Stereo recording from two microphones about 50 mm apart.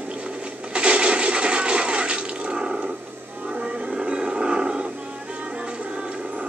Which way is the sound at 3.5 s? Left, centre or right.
Right.